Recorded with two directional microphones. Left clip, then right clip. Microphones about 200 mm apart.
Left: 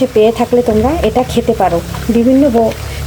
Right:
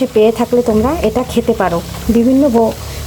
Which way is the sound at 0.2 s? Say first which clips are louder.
Even; 10° right (ahead or behind).